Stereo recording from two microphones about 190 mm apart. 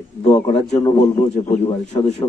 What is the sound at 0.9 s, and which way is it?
A man's voice, 35° left (ahead or behind).